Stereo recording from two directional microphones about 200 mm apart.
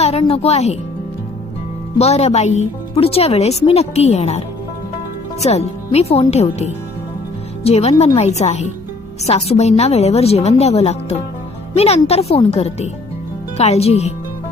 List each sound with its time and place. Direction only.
0.0 s a woman's voice: 30° left (ahead or behind)
2.0 s a woman's voice: 30° left (ahead or behind)